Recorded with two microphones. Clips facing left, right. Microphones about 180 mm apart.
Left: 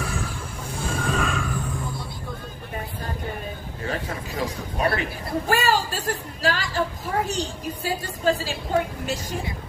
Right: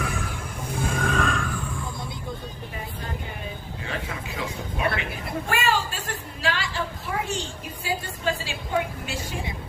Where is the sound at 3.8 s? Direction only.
40° left (ahead or behind).